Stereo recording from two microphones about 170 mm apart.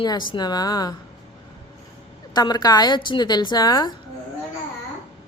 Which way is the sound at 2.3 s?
25° left (ahead or behind).